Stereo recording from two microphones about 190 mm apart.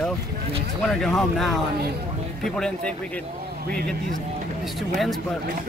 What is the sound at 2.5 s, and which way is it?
Speech, 5° left (ahead or behind).